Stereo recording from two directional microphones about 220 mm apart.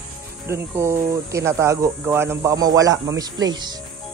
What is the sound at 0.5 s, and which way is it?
Speech, 10° right (ahead or behind).